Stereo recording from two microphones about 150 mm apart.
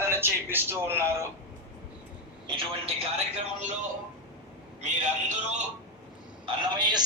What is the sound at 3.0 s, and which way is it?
Speech, 50° right (ahead or behind).